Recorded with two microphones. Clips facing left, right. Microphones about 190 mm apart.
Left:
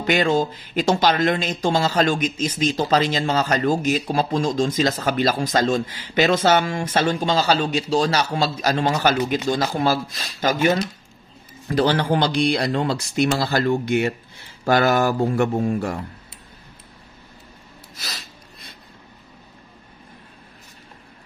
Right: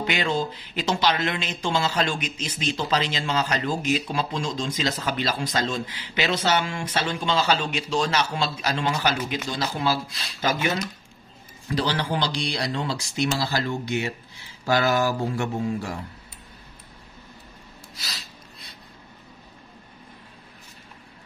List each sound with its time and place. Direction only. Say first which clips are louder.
0.0 s speech: left 6 dB; 45° left (ahead or behind)
11.7 s speech: left 6 dB; 50° left (ahead or behind)
17.9 s snort: left 4 dB; 50° left (ahead or behind)